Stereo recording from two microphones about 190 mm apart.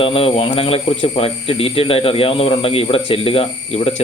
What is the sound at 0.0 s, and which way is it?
Speech, 30° left (ahead or behind).